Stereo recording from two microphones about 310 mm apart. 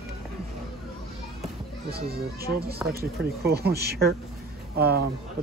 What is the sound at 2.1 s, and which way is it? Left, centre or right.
Speech, right.